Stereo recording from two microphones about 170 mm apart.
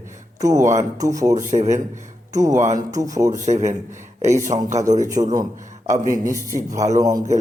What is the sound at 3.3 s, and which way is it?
Speech, 45° right (ahead or behind).